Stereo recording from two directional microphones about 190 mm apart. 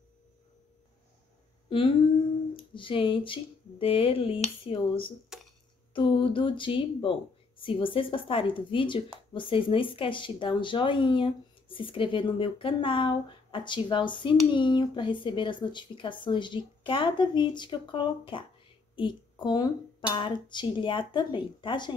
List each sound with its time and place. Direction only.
1.7 s humming: 25° left (ahead or behind)
2.5 s speech: 25° left (ahead or behind)
5.3 s a sound: 5° right (ahead or behind)
5.9 s speech: 25° left (ahead or behind)
19.4 s speech: 25° left (ahead or behind)